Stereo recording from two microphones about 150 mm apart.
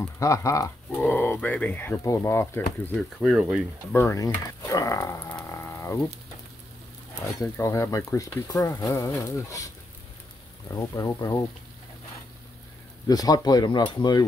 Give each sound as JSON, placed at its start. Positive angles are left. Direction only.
{"t": 0.0, "sound": "speech", "side_deg": 20}
{"t": 3.2, "sound": "speech", "side_deg": 0}
{"t": 3.9, "sound": "speech", "side_deg": 15}
{"t": 7.3, "sound": "speech", "side_deg": 15}
{"t": 10.7, "sound": "speech", "side_deg": 20}
{"t": 13.1, "sound": "speech", "side_deg": 25}